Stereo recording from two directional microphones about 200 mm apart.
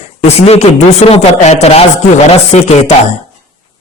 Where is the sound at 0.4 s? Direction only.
30° left (ahead or behind).